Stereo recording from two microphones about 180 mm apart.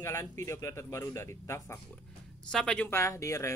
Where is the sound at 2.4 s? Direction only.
5° left (ahead or behind).